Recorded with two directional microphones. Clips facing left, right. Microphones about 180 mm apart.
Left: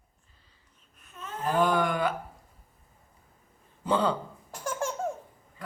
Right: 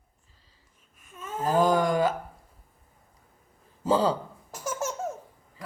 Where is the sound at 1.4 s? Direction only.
40° right (ahead or behind).